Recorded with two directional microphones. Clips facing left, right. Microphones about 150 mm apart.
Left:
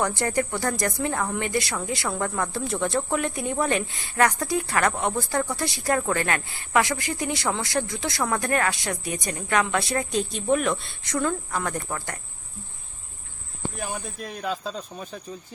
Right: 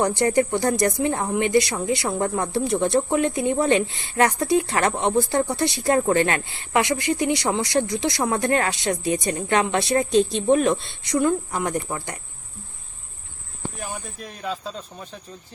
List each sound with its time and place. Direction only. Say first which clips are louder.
0.0 s speech: right 5 dB; 20° right (ahead or behind)
13.7 s speech: left 2 dB; centre (ahead or behind)